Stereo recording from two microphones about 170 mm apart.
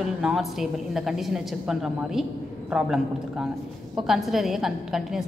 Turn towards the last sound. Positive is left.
turn(degrees=0)  # may be behind; listen again after turning